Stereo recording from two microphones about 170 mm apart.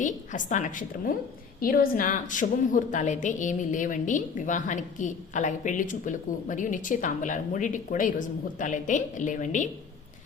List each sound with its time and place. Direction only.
0.0 s a woman's voice: 50° left (ahead or behind)